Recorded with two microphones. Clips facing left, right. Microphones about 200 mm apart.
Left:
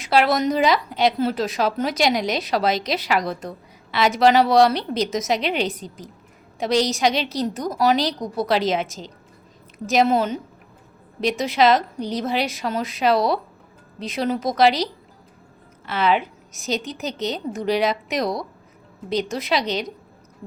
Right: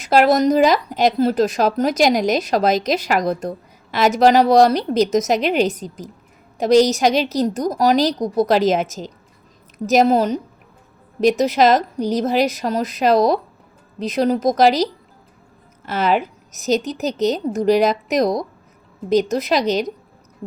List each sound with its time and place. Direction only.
0.0 s a woman's voice: 45° right (ahead or behind)
15.9 s a woman's voice: 45° right (ahead or behind)
19.3 s speech: 40° right (ahead or behind)